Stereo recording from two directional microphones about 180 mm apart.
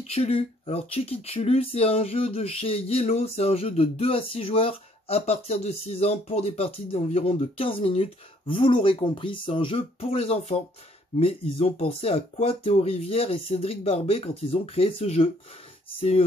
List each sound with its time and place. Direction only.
0.0 s speech: 35° left (ahead or behind)